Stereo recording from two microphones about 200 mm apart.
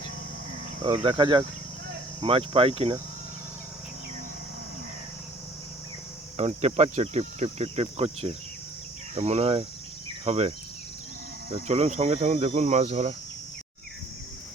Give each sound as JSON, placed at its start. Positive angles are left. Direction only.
{"t": 1.0, "sound": "speech", "side_deg": -25}
{"t": 6.3, "sound": "cricket", "side_deg": -30}
{"t": 11.5, "sound": "cricket", "side_deg": -30}